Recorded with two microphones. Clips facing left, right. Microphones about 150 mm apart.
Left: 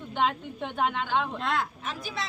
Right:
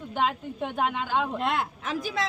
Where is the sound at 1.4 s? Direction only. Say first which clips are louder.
Right 2 dB; 20° right (ahead or behind).